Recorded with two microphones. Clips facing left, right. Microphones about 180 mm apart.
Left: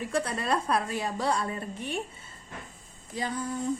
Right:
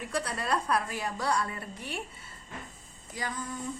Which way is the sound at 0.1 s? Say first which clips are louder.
Left 2 dB; 25° left (ahead or behind).